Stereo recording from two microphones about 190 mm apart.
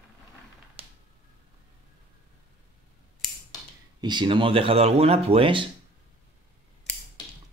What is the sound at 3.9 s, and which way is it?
Speech, 25° right (ahead or behind).